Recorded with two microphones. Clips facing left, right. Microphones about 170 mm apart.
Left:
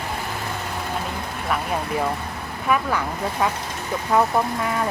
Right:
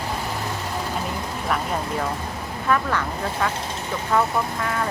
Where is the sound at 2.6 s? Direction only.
10° left (ahead or behind).